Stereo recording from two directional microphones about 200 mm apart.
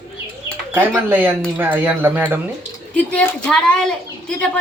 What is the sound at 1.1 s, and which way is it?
Speech, 10° right (ahead or behind).